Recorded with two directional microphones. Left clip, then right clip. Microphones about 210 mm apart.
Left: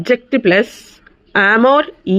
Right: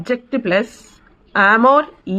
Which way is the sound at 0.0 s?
30° left (ahead or behind).